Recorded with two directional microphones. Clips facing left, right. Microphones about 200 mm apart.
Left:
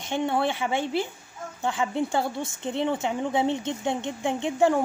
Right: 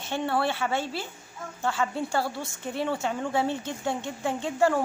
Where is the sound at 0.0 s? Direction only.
15° left (ahead or behind).